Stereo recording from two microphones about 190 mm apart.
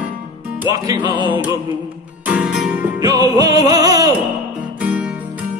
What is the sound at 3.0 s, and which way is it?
Music, 20° right (ahead or behind).